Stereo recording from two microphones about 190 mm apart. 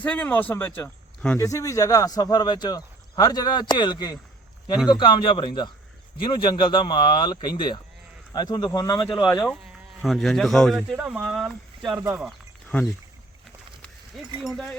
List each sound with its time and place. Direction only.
0.0 s speech: 5° left (ahead or behind)
9.2 s speech: centre (ahead or behind)
12.1 s a sound: 5° right (ahead or behind)
14.4 s speech: 5° left (ahead or behind)